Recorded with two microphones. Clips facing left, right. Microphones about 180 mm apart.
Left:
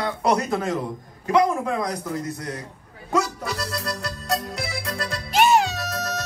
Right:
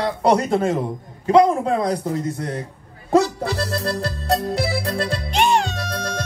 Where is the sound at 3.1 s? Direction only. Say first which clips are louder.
Right 7 dB; 30° right (ahead or behind).